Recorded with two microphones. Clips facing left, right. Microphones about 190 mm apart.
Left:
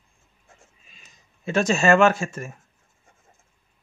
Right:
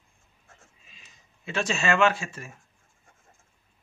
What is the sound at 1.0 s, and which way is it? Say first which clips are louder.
Speech: left 8 dB; 45° left (ahead or behind).